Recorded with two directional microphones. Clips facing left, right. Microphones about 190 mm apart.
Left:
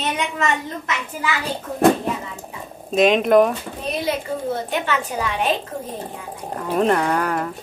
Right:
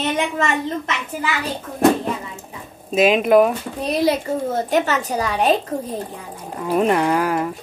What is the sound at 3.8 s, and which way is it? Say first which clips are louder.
A woman's voice: right 5 dB; 40° right (ahead or behind).